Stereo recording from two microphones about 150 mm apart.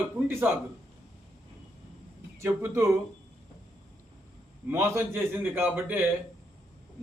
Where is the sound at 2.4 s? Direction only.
15° right (ahead or behind).